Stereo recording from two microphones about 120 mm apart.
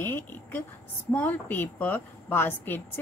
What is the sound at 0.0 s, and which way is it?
Speech, 15° left (ahead or behind).